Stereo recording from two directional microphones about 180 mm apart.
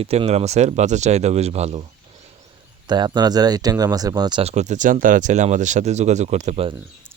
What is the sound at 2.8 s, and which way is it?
Speech, 25° right (ahead or behind).